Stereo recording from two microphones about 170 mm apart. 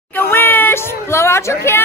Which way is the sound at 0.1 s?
15° left (ahead or behind).